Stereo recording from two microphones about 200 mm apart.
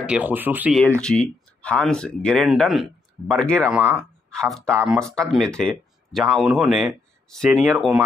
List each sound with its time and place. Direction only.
0.0 s speech: 5° right (ahead or behind)
1.0 s speech: 5° left (ahead or behind)
4.7 s speech: 15° right (ahead or behind)
5.0 s speech: 5° left (ahead or behind)